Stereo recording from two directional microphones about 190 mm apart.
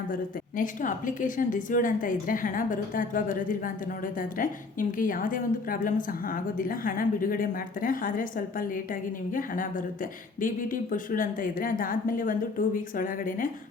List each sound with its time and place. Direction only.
0.1 s a woman's voice: 45° left (ahead or behind)